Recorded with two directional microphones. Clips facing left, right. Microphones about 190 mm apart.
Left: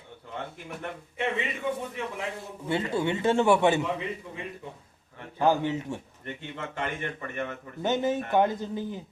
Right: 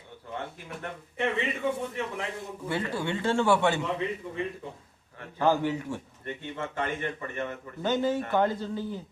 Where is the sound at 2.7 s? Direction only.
25° left (ahead or behind).